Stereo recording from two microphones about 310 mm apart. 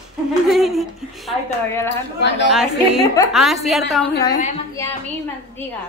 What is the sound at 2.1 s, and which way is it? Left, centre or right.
Speech, left.